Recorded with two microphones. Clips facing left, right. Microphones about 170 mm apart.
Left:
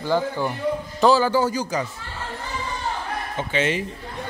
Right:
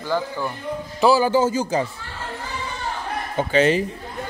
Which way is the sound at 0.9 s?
10° right (ahead or behind).